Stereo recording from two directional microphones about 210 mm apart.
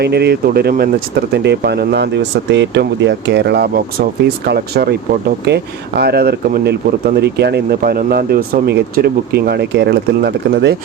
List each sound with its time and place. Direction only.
0.0 s speech: 50° right (ahead or behind)